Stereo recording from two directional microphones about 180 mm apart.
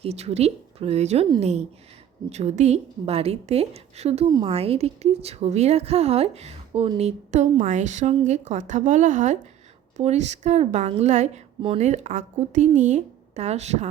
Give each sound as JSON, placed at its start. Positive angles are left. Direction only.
{"t": 0.0, "sound": "a woman's voice", "side_deg": -35}